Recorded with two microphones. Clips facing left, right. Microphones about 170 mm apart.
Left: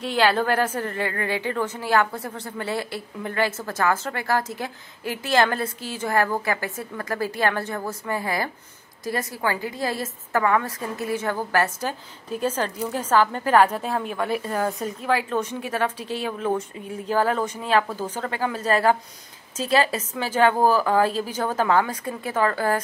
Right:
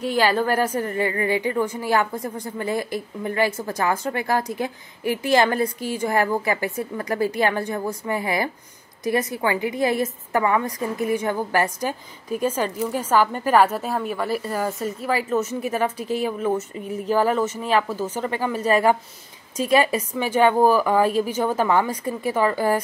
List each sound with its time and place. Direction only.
0.0 s a woman's voice: 10° right (ahead or behind)